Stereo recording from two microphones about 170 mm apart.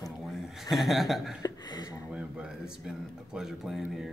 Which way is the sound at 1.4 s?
25° left (ahead or behind).